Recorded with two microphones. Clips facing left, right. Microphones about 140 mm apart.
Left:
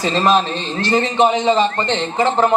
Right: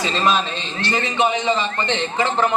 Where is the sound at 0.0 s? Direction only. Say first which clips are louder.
Left 4 dB; 40° left (ahead or behind).